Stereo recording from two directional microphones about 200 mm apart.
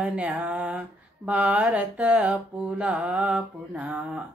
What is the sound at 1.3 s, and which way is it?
Mantra, 5° right (ahead or behind).